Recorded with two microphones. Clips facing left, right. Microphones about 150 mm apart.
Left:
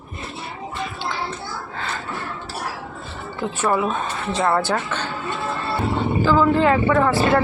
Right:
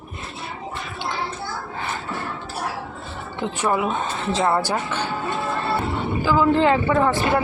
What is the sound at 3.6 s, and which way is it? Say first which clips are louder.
Speech: left 1 dB; 15° right (ahead or behind).